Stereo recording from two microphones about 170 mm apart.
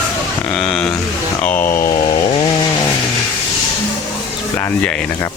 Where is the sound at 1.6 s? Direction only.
55° left (ahead or behind).